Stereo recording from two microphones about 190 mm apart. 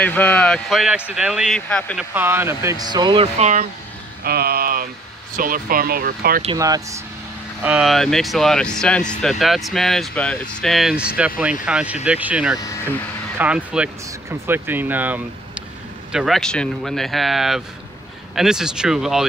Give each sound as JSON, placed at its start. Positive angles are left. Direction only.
{"t": 0.0, "sound": "speech", "side_deg": 10}
{"t": 2.1, "sound": "speech", "side_deg": -10}
{"t": 3.3, "sound": "speech", "side_deg": -35}
{"t": 4.2, "sound": "a sound", "side_deg": -55}
{"t": 5.3, "sound": "speech", "side_deg": -50}
{"t": 6.4, "sound": "speech", "side_deg": -20}
{"t": 7.6, "sound": "speech", "side_deg": -5}